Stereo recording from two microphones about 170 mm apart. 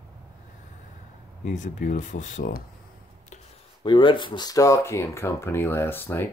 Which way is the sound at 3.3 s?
45° left (ahead or behind).